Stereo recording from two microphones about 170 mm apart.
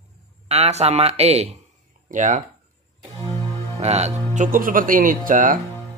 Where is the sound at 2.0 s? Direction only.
50° right (ahead or behind).